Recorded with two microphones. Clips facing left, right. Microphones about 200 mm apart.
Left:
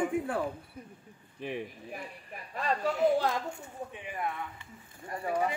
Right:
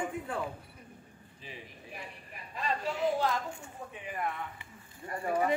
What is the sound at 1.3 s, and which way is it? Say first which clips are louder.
Speech: left 12 dB; 65° left (ahead or behind).